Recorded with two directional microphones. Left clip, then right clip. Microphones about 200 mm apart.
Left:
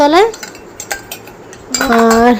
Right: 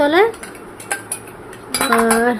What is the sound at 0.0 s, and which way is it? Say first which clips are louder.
Speech: left 5 dB; 25° left (ahead or behind).